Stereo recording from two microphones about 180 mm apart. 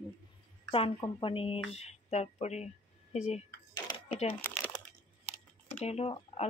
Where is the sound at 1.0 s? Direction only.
25° left (ahead or behind).